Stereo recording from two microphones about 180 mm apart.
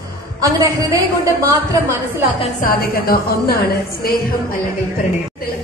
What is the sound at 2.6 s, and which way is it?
Speech, 55° left (ahead or behind).